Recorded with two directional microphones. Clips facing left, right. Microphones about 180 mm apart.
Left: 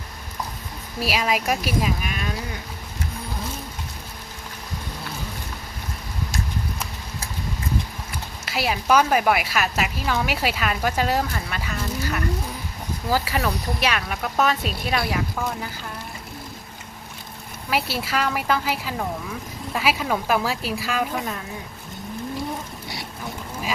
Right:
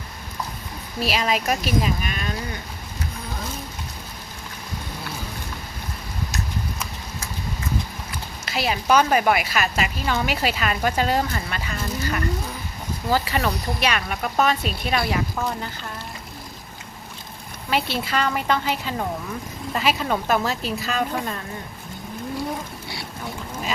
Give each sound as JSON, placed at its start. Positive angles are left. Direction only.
{"t": 0.9, "sound": "a woman's voice", "side_deg": 5}
{"t": 6.3, "sound": "a sound", "side_deg": 30}
{"t": 8.4, "sound": "a woman's voice", "side_deg": 5}
{"t": 17.7, "sound": "a woman's voice", "side_deg": 5}